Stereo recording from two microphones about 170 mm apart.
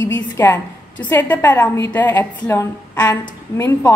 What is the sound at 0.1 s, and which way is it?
A woman's voice, 15° left (ahead or behind).